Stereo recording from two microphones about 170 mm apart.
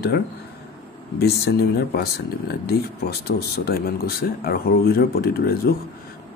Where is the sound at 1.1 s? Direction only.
70° left (ahead or behind).